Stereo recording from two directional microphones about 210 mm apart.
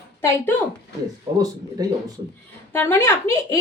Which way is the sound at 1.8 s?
20° right (ahead or behind).